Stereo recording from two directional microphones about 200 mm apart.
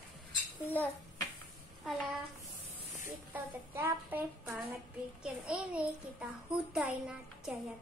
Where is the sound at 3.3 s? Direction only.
10° right (ahead or behind).